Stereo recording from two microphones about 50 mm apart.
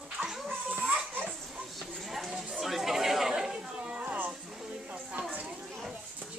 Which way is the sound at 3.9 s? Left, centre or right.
Right.